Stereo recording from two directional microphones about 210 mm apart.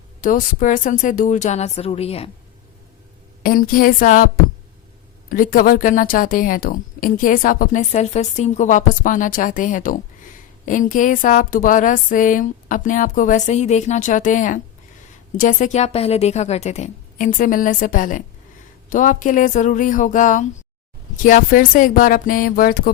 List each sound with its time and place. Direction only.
0.2 s a woman's voice: 40° left (ahead or behind)
3.4 s a woman's voice: 45° left (ahead or behind)
5.3 s a woman's voice: 40° left (ahead or behind)